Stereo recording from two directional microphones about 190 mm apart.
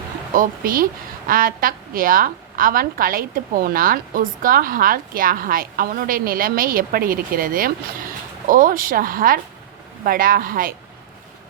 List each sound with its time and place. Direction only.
0.3 s a woman's voice: 50° right (ahead or behind)